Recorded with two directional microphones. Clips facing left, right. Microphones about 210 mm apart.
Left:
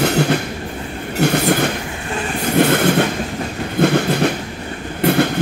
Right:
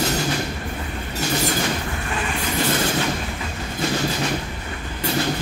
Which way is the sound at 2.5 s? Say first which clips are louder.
Left 9 dB; 60° left (ahead or behind).